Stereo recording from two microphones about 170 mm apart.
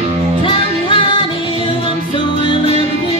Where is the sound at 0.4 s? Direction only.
30° left (ahead or behind).